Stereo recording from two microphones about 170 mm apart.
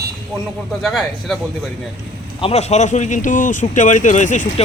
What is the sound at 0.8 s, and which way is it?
Speech, centre (ahead or behind).